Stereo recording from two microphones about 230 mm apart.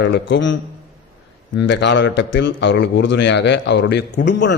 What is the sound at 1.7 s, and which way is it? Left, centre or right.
A man's voice, left.